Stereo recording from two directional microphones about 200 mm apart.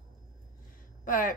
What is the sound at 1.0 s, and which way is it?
Speech, 40° left (ahead or behind).